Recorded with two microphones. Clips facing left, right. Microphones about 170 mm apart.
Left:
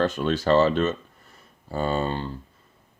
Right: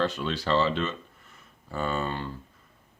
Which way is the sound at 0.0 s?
50° left (ahead or behind).